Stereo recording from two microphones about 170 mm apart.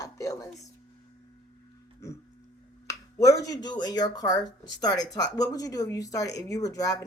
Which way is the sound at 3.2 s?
20° left (ahead or behind).